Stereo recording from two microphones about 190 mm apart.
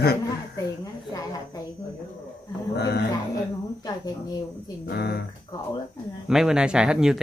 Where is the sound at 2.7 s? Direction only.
60° left (ahead or behind).